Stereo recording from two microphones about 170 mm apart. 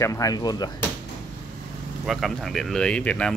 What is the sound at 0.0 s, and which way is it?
Speech, 20° left (ahead or behind).